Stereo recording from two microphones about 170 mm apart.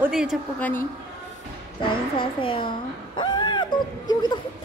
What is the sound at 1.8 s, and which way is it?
A woman's voice, 30° left (ahead or behind).